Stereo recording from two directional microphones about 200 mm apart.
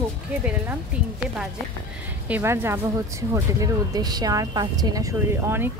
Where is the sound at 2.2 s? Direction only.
10° right (ahead or behind).